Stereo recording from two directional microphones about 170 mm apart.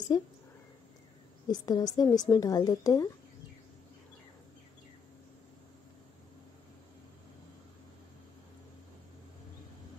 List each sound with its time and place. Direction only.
1.5 s a woman's voice: 25° left (ahead or behind)